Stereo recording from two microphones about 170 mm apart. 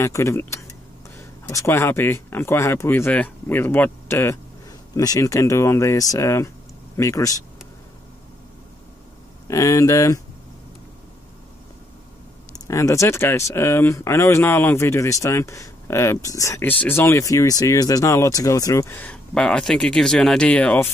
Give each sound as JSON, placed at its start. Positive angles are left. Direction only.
{"t": 0.0, "sound": "speech", "side_deg": 15}
{"t": 9.5, "sound": "speech", "side_deg": 20}
{"t": 12.5, "sound": "speech", "side_deg": 20}